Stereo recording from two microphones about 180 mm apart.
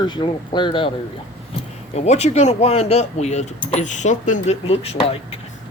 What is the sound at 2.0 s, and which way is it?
Speech, 40° left (ahead or behind).